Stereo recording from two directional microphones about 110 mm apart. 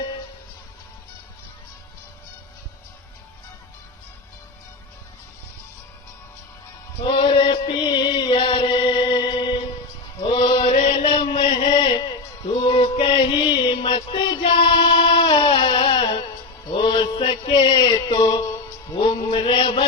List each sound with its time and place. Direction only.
7.0 s chant: 50° left (ahead or behind)
10.3 s mantra: 50° left (ahead or behind)
10.7 s mantra: 90° left; by 12.0 s 45° left (ahead or behind)
12.5 s music: 45° left (ahead or behind)
16.7 s mantra: 45° left (ahead or behind)